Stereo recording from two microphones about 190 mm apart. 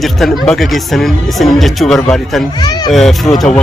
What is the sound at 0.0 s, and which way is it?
Speech, centre (ahead or behind).